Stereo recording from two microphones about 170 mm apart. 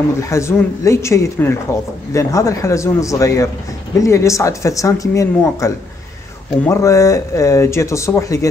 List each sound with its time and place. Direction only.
0.2 s speech: 15° left (ahead or behind)